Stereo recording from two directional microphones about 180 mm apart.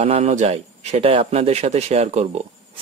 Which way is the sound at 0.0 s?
35° right (ahead or behind).